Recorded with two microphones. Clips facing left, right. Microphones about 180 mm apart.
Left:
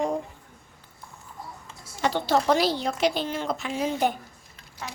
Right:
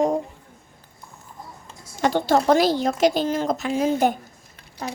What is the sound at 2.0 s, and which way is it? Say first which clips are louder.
A child's voice: right 4 dB; 45° right (ahead or behind).